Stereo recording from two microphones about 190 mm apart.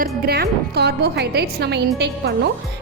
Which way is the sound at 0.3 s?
55° right (ahead or behind).